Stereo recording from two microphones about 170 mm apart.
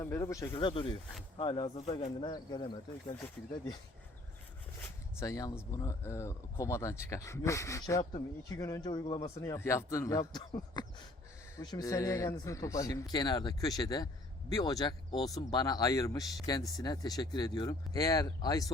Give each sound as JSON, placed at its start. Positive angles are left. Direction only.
{"t": 0.0, "sound": "speech", "side_deg": 15}
{"t": 5.2, "sound": "speech", "side_deg": 20}